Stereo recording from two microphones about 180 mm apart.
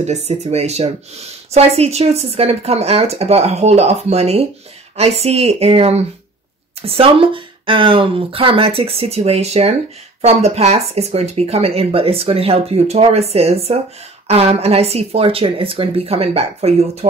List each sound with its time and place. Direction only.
0.0 s speech: 35° right (ahead or behind)